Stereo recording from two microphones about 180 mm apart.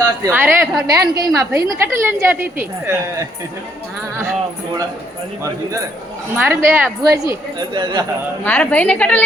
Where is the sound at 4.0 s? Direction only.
15° right (ahead or behind).